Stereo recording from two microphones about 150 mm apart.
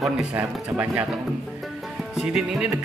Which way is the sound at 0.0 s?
Centre (ahead or behind).